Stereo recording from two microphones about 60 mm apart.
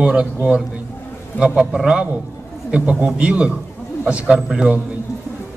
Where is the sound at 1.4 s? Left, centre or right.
Centre.